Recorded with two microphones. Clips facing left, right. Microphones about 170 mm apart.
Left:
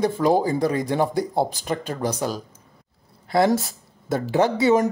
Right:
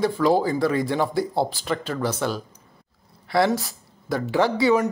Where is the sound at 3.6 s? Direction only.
25° left (ahead or behind).